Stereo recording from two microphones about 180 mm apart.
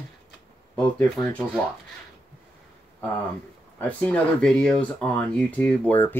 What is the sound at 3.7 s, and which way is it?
Speech, 10° left (ahead or behind).